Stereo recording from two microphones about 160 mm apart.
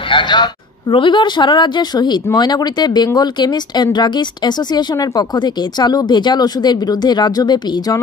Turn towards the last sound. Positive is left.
turn(degrees=25)  # may be behind; listen again after turning